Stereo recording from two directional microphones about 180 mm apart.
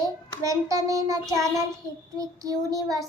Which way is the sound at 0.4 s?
20° right (ahead or behind).